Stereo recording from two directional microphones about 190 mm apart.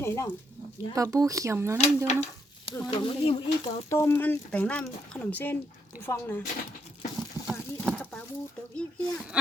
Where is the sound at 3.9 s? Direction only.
15° left (ahead or behind).